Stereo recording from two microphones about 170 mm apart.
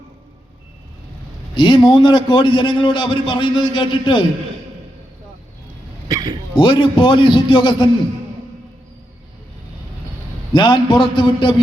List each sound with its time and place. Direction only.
1.5 s a man's voice: 30° left (ahead or behind)
6.1 s a sound: 25° right (ahead or behind)
6.6 s a man's voice: 25° left (ahead or behind)
10.5 s a man's voice: 25° left (ahead or behind)